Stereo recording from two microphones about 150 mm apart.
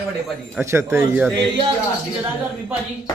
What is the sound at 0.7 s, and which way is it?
Speech, 15° right (ahead or behind).